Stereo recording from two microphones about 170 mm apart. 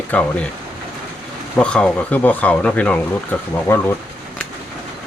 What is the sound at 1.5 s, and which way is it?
Speech, 5° left (ahead or behind).